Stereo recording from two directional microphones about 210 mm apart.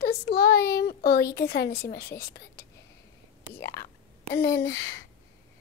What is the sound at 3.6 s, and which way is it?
Whispering, 50° left (ahead or behind).